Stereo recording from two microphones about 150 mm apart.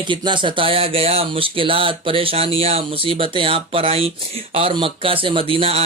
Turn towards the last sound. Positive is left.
turn(degrees=-40)  # may be behind; listen again after turning